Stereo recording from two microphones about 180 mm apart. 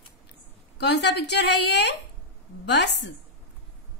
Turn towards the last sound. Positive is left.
turn(degrees=75)  # may be behind; listen again after turning